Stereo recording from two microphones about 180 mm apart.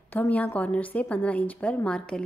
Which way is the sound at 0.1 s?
10° left (ahead or behind).